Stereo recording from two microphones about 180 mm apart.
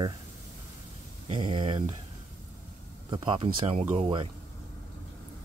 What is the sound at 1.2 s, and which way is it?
Speech, 30° right (ahead or behind).